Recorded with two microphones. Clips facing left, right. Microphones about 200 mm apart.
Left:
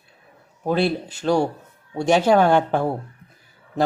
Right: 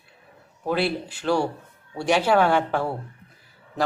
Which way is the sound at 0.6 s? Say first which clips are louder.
Left 3 dB; 40° left (ahead or behind).